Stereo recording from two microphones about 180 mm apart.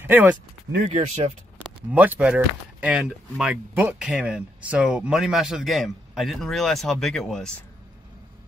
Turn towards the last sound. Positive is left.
turn(degrees=5)  # may be behind; listen again after turning